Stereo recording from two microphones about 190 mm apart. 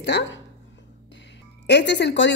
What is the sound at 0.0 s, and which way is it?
Speech, 65° left (ahead or behind).